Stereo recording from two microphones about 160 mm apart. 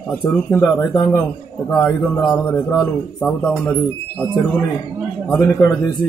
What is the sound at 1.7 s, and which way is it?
Speech, 5° left (ahead or behind).